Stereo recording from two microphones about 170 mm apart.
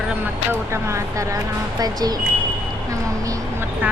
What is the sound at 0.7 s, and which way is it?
A woman's voice, 15° right (ahead or behind).